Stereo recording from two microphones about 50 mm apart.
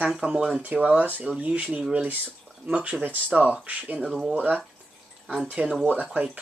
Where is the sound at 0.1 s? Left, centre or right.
Centre.